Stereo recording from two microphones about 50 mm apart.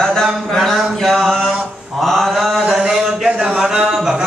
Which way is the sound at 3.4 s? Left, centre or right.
Centre.